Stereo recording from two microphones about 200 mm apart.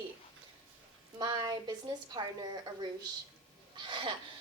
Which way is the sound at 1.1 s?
20° right (ahead or behind).